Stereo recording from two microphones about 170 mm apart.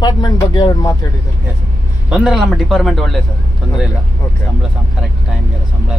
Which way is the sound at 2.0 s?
5° right (ahead or behind).